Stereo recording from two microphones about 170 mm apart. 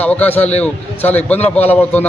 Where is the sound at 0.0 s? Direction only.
10° left (ahead or behind).